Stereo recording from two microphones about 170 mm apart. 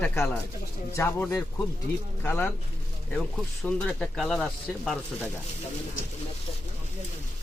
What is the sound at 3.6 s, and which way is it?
Speech, 5° left (ahead or behind).